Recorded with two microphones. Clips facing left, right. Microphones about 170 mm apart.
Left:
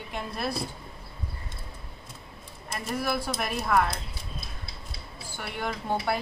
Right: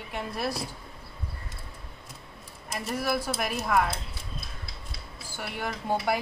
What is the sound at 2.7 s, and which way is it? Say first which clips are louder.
Speech: right 1 dB; 5° right (ahead or behind).